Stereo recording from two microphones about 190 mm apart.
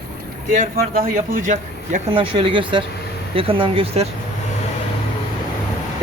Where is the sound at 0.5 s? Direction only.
45° right (ahead or behind).